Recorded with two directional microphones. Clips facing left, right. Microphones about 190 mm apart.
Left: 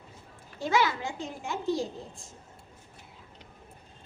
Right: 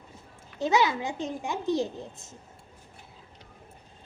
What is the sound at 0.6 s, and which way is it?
A child's voice, 20° right (ahead or behind).